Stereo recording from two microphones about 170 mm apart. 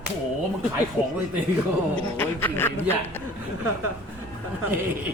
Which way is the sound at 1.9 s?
10° left (ahead or behind).